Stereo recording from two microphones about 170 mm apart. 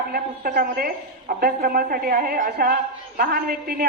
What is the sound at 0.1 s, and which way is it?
A woman's voice, 60° right (ahead or behind).